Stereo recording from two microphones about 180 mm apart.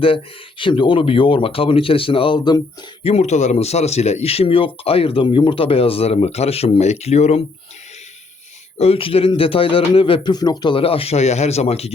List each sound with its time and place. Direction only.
0.0 s a man's voice: 30° left (ahead or behind)
8.8 s a man's voice: 30° left (ahead or behind)